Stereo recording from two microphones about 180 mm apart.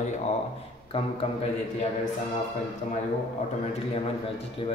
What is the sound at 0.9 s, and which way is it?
Speech, 35° left (ahead or behind).